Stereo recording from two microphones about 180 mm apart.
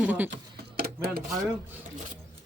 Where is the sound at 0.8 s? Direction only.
60° right (ahead or behind).